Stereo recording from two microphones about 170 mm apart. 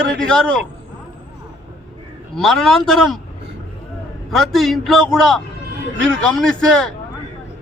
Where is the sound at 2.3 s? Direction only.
Centre (ahead or behind).